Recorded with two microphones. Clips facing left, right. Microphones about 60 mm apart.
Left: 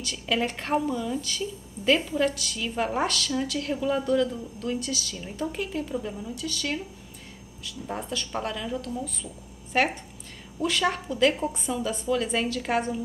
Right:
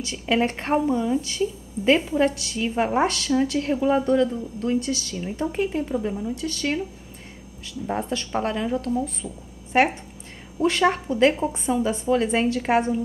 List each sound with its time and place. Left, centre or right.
0.0 s a woman's voice: right
6.3 s a woman's voice: right